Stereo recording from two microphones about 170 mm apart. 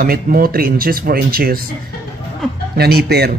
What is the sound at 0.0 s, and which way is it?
Speech, 60° right (ahead or behind).